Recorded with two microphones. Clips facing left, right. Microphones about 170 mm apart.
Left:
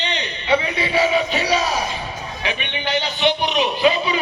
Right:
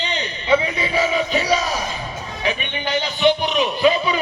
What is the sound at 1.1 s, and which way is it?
Crowd, 40° right (ahead or behind).